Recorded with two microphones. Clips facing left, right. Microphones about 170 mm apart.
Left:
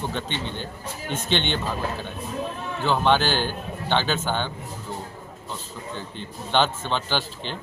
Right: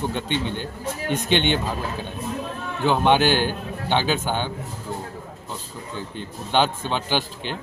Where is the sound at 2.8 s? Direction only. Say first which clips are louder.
Right 3 dB; 15° right (ahead or behind).